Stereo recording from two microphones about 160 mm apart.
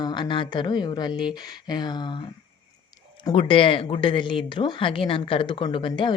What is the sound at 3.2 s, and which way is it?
Speech, 30° left (ahead or behind).